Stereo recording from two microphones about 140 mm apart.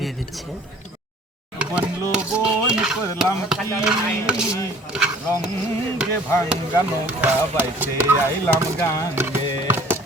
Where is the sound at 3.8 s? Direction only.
5° right (ahead or behind).